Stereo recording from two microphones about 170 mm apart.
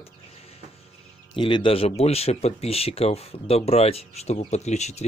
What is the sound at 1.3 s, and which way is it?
Speech, 30° left (ahead or behind).